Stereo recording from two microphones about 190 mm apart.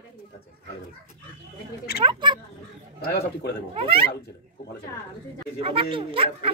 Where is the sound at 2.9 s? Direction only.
55° left (ahead or behind).